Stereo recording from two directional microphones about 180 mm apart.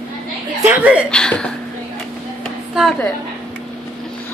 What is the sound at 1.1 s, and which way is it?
Speech, 5° left (ahead or behind).